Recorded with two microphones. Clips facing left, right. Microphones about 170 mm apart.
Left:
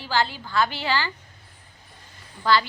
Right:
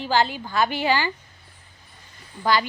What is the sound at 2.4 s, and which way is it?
Speech, 15° right (ahead or behind).